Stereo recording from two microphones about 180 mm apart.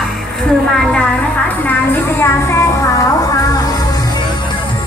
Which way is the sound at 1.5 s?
10° left (ahead or behind).